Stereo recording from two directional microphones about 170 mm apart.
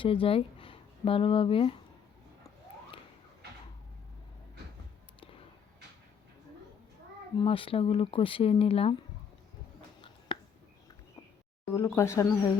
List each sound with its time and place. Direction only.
0.0 s speech: 30° left (ahead or behind)
7.4 s speech: 30° left (ahead or behind)
10.3 s a sound: 30° left (ahead or behind)
11.7 s speech: 15° left (ahead or behind)